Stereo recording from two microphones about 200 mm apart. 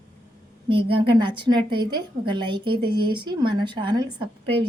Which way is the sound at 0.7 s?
25° right (ahead or behind).